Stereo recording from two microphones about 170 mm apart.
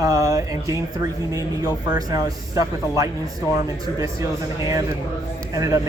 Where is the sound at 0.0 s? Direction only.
20° right (ahead or behind).